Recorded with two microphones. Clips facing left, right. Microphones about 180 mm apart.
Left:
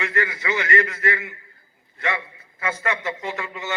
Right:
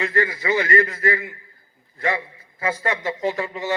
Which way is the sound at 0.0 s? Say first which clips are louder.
Right 3 dB; 30° right (ahead or behind).